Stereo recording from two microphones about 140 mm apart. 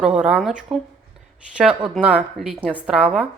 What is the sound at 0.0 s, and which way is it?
Speech, 5° right (ahead or behind).